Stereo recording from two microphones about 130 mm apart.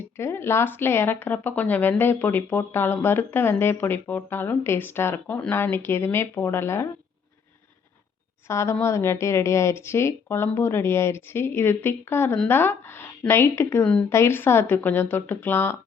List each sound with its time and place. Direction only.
0.2 s speech: 20° left (ahead or behind)
8.4 s speech: 20° left (ahead or behind)